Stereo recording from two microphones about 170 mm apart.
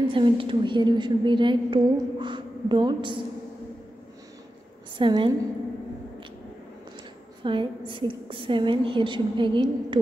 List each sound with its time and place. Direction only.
0.1 s a woman's voice: 30° right (ahead or behind)
4.9 s a woman's voice: 30° right (ahead or behind)
7.4 s a woman's voice: 30° right (ahead or behind)